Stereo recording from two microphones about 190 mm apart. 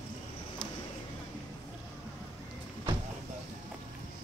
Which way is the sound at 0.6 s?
5° left (ahead or behind).